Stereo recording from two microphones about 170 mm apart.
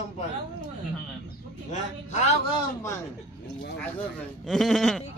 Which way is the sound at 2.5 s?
25° left (ahead or behind).